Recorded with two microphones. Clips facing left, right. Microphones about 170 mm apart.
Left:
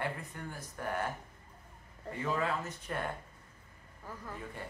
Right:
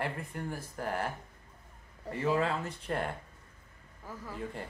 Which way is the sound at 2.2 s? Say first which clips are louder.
Right 4 dB; 30° right (ahead or behind).